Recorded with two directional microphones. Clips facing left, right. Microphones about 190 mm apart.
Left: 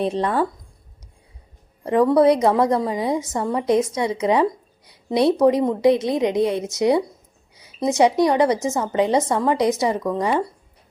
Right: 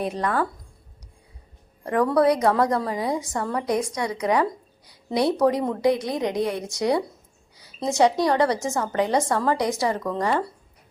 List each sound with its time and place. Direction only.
0.0 s a woman's voice: 25° left (ahead or behind)
1.8 s a woman's voice: 20° left (ahead or behind)